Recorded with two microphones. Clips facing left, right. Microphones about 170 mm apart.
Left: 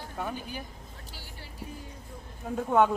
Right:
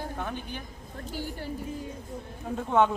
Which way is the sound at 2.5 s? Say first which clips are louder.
Even; 5° left (ahead or behind).